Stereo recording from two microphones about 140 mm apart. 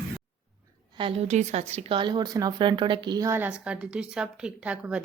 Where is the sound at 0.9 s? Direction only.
40° right (ahead or behind).